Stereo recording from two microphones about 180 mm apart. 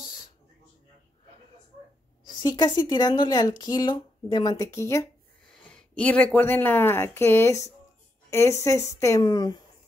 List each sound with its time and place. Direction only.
2.2 s speech: 20° left (ahead or behind)
5.5 s speech: 5° left (ahead or behind); by 9.6 s 20° left (ahead or behind)